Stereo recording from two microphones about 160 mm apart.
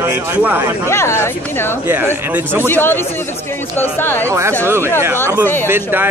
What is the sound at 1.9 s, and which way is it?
Speech, 10° right (ahead or behind).